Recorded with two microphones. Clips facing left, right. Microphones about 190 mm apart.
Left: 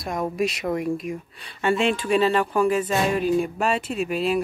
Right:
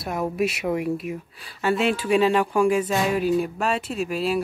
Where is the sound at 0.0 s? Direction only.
5° right (ahead or behind).